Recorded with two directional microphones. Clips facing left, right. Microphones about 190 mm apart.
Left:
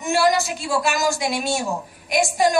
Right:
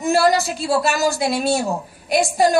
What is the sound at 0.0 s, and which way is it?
A woman's voice, 35° right (ahead or behind).